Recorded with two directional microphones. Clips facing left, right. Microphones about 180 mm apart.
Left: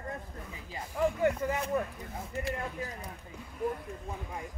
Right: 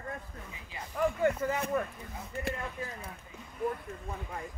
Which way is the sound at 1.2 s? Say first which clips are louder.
Even; 15° left (ahead or behind).